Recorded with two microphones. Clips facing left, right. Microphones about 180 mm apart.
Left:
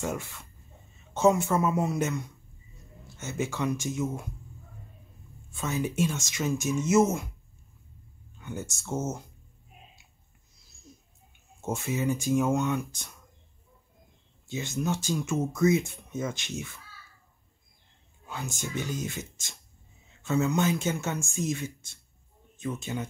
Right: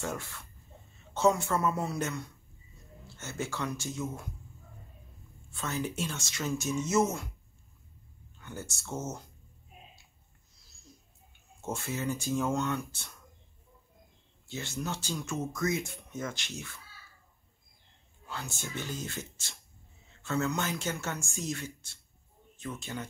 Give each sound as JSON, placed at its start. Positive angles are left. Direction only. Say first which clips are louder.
{"t": 0.0, "sound": "speech", "louder": "left 4 dB", "side_deg": 15}
{"t": 5.5, "sound": "speech", "louder": "left 4 dB", "side_deg": 15}
{"t": 8.4, "sound": "speech", "louder": "left 5 dB", "side_deg": 15}
{"t": 11.6, "sound": "speech", "louder": "left 5 dB", "side_deg": 15}
{"t": 14.5, "sound": "speech", "louder": "left 6 dB", "side_deg": 15}
{"t": 18.2, "sound": "speech", "louder": "left 4 dB", "side_deg": 15}